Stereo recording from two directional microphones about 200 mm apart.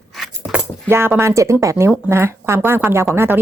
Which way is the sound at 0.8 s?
10° right (ahead or behind).